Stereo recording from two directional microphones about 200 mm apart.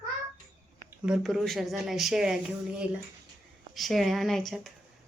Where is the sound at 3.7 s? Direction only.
Centre (ahead or behind).